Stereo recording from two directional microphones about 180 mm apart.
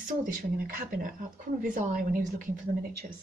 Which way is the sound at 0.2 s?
50° right (ahead or behind).